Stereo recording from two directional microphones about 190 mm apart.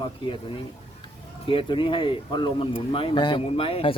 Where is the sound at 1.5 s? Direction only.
25° left (ahead or behind).